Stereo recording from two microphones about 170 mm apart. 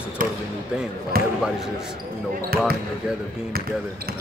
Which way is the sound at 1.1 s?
60° right (ahead or behind).